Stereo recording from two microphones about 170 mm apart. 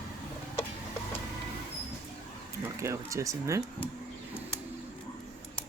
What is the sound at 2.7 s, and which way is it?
Speech, 15° right (ahead or behind).